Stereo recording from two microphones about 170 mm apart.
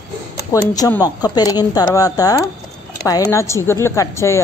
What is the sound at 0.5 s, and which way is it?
A woman's voice, 20° left (ahead or behind).